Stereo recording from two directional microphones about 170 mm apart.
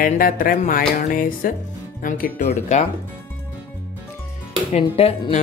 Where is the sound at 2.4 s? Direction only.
40° left (ahead or behind).